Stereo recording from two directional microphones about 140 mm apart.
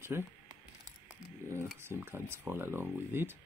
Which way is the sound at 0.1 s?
20° right (ahead or behind).